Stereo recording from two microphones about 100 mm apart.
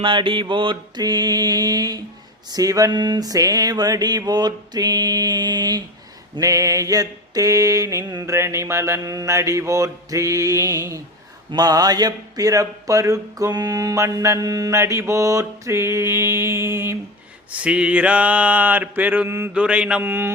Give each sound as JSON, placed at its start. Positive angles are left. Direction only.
{"t": 0.0, "sound": "mantra", "side_deg": -55}
{"t": 2.5, "sound": "a man's voice", "side_deg": -35}
{"t": 6.4, "sound": "a man's voice", "side_deg": -30}
{"t": 17.5, "sound": "mantra", "side_deg": -10}